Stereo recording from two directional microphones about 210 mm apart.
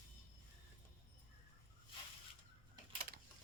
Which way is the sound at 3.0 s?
45° right (ahead or behind).